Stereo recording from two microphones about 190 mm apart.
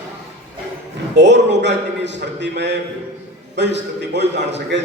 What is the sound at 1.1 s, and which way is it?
A man's voice, 65° right (ahead or behind).